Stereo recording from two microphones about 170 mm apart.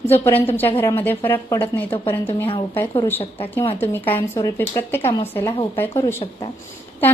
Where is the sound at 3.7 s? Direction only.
10° left (ahead or behind).